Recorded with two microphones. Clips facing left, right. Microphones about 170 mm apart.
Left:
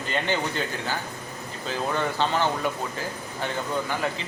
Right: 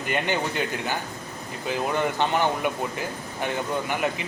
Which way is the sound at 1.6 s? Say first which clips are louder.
Right 2 dB; 15° right (ahead or behind).